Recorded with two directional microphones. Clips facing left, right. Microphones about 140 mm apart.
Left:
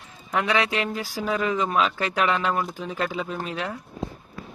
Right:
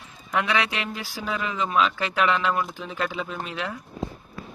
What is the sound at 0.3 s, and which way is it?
Speech, 35° left (ahead or behind).